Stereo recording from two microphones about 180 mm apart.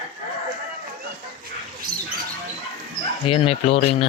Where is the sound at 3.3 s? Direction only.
35° left (ahead or behind).